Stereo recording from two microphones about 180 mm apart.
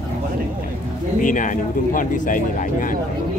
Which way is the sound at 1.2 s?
45° left (ahead or behind).